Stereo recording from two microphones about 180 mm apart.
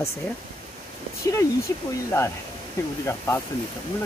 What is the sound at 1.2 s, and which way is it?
Speech, 15° left (ahead or behind).